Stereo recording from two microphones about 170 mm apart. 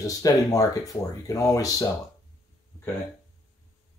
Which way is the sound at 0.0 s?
20° left (ahead or behind).